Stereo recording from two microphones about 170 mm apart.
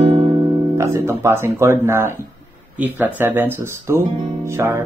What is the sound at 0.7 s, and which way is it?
Speech, 15° right (ahead or behind).